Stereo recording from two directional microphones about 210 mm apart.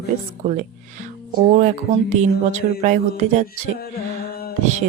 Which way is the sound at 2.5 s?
35° right (ahead or behind).